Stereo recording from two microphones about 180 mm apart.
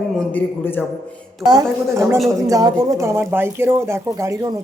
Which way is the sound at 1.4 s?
15° right (ahead or behind).